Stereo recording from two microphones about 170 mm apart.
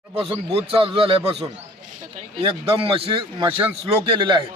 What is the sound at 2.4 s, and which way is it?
A man's voice, 35° right (ahead or behind).